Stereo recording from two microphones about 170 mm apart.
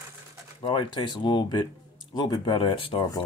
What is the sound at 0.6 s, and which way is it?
Speech, 25° left (ahead or behind).